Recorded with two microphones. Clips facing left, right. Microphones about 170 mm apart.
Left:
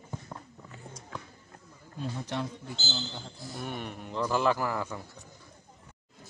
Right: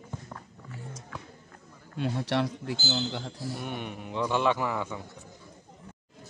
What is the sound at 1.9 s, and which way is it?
Speech, 75° right (ahead or behind).